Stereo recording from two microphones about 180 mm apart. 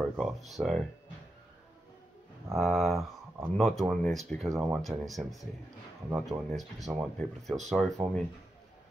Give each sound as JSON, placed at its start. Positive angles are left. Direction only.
{"t": 0.1, "sound": "speech", "side_deg": 0}
{"t": 2.5, "sound": "speech", "side_deg": 0}